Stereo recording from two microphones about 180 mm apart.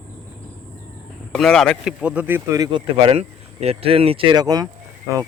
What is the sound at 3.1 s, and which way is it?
Speech, 35° right (ahead or behind).